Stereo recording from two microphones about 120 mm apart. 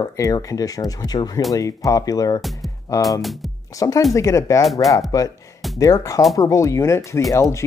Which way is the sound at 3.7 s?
30° left (ahead or behind).